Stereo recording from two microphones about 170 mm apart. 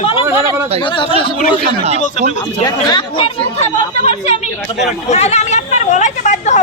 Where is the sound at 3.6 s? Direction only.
40° left (ahead or behind).